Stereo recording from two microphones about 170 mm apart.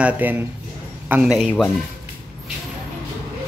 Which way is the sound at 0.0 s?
10° right (ahead or behind).